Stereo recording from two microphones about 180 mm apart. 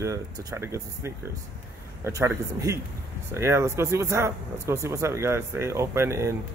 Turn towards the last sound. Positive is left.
turn(degrees=-15)  # may be behind; listen again after turning